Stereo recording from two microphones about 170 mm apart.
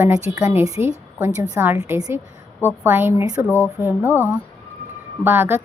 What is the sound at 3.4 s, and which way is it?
Speech, 15° left (ahead or behind).